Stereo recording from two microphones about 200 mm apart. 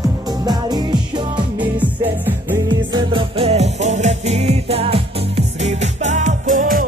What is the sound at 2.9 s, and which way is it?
Music, 25° right (ahead or behind).